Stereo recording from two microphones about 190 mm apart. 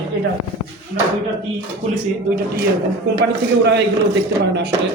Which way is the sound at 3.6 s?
60° right (ahead or behind).